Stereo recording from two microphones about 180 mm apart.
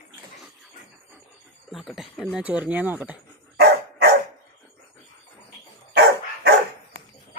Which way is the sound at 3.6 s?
60° right (ahead or behind).